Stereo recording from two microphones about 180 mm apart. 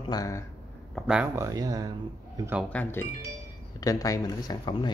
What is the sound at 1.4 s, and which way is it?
Speech, 20° right (ahead or behind).